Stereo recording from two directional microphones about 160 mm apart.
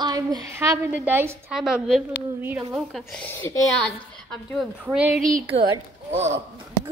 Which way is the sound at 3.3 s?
20° left (ahead or behind).